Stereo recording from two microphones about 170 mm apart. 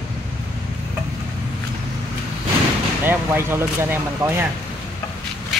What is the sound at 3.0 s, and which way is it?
Speech, 15° right (ahead or behind).